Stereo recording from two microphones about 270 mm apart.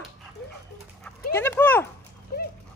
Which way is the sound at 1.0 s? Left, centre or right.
Centre.